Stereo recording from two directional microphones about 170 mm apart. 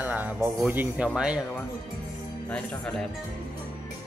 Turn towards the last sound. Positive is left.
turn(degrees=5)  # may be behind; listen again after turning